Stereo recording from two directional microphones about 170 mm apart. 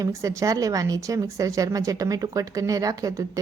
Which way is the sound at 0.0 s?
20° right (ahead or behind).